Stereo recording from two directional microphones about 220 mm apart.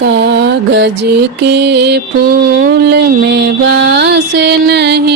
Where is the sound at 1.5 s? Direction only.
50° right (ahead or behind).